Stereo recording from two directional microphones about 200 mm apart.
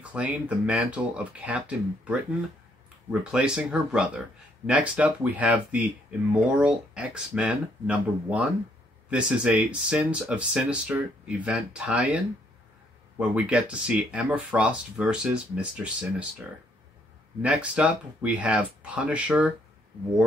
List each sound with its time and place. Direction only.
0.1 s speech: 5° right (ahead or behind)
13.2 s speech: 5° right (ahead or behind)
17.4 s speech: 5° right (ahead or behind)